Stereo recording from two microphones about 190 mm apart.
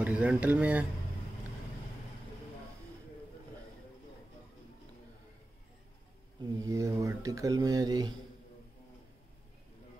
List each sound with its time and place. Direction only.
0.0 s speech: 5° right (ahead or behind)
6.6 s speech: 15° right (ahead or behind)